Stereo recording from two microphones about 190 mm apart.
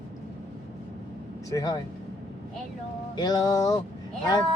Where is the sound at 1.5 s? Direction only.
20° left (ahead or behind).